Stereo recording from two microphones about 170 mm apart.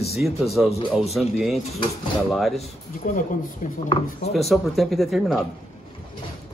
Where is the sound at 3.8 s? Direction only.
30° left (ahead or behind).